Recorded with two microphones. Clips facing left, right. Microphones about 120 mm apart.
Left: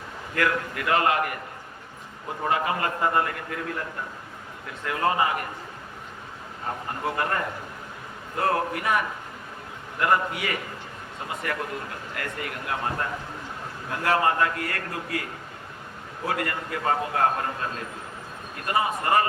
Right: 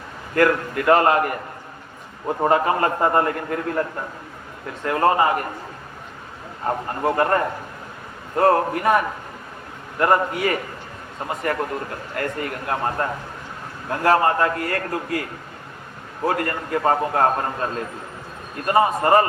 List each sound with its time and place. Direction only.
0.3 s a man's voice: 40° right (ahead or behind)
4.9 s speech: 45° right (ahead or behind)
6.7 s a man's voice: 45° right (ahead or behind)
16.2 s a man's voice: 40° right (ahead or behind)
18.8 s a man's voice: 35° right (ahead or behind)